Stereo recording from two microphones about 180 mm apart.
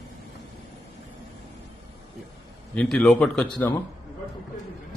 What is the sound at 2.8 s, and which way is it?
Speech, 5° left (ahead or behind).